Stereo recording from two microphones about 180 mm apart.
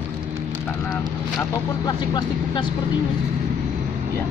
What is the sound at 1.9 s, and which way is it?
Speech, 25° left (ahead or behind).